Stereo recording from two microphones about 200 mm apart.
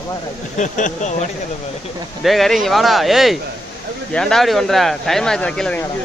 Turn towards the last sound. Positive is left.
turn(degrees=5)  # may be behind; listen again after turning